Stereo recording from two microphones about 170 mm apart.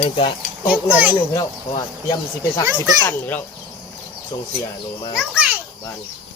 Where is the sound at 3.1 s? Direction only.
10° left (ahead or behind).